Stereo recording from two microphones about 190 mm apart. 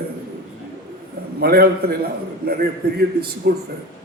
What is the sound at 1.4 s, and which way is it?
A man's voice, 55° right (ahead or behind).